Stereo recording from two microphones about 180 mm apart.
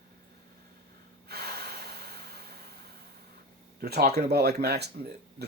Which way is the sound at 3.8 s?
60° right (ahead or behind).